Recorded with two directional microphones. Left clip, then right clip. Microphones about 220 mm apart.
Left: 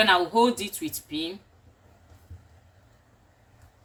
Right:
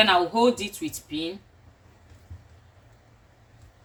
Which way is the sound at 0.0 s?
5° right (ahead or behind).